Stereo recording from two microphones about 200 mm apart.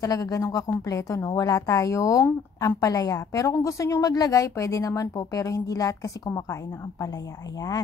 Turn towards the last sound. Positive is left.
turn(degrees=20)  # may be behind; listen again after turning